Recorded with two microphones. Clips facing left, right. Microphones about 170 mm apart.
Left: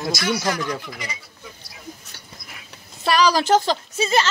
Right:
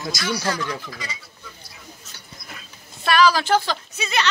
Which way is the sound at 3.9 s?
40° left (ahead or behind).